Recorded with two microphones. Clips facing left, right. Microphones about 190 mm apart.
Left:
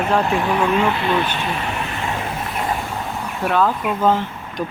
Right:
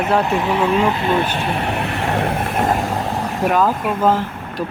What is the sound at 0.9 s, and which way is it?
Speech, 45° right (ahead or behind).